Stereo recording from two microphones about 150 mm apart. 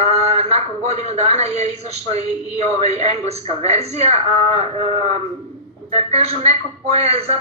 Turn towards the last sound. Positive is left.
turn(degrees=-45)  # may be behind; listen again after turning